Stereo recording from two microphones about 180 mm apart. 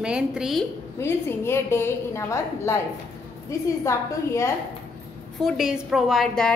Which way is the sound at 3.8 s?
15° left (ahead or behind).